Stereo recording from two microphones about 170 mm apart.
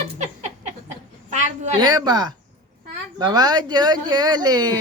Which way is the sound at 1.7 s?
25° right (ahead or behind).